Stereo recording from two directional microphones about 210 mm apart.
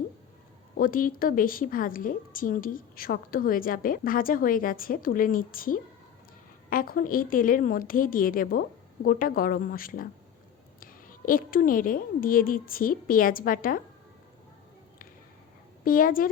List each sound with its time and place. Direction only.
0.8 s a woman's voice: 40° left (ahead or behind)
11.3 s a woman's voice: 40° left (ahead or behind)
15.8 s a woman's voice: 40° left (ahead or behind)